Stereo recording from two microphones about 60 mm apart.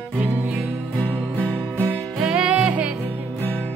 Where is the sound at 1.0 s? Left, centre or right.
Left.